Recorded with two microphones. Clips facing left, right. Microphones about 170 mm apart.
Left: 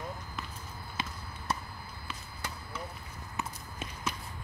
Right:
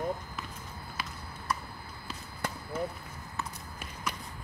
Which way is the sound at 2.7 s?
50° right (ahead or behind).